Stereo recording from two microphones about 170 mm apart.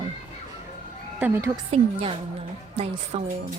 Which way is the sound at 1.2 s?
15° right (ahead or behind).